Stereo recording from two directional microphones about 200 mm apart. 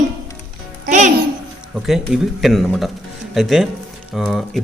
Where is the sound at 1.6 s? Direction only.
Centre (ahead or behind).